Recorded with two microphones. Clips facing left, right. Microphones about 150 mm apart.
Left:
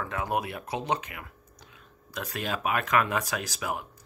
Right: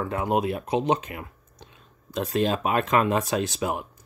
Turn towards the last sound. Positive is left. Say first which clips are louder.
# right 7 dB
turn(degrees=-25)  # may be behind; listen again after turning